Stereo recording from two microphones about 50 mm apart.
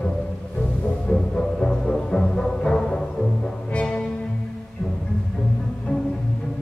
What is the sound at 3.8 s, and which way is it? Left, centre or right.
Cello, left.